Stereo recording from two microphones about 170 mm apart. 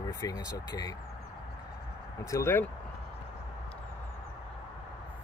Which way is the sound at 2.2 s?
15° left (ahead or behind).